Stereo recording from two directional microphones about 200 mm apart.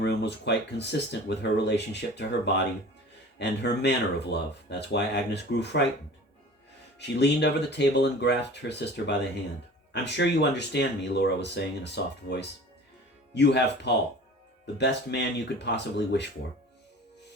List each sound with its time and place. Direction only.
0.0 s speech: 55° left (ahead or behind)
7.0 s speech: 60° left (ahead or behind)
13.3 s speech: 60° left (ahead or behind)